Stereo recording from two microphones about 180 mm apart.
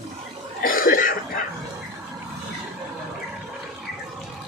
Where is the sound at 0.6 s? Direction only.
50° left (ahead or behind).